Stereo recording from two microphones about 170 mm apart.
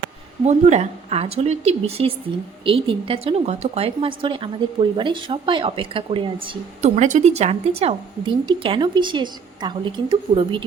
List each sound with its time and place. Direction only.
0.4 s a woman's voice: 40° right (ahead or behind)
6.9 s a woman's voice: 45° right (ahead or behind); by 10.6 s 30° right (ahead or behind)